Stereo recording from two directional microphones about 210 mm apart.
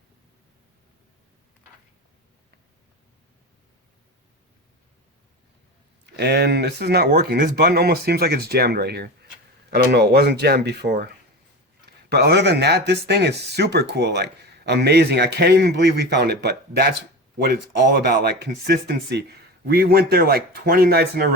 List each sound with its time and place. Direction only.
6.1 s speech: 50° right (ahead or behind)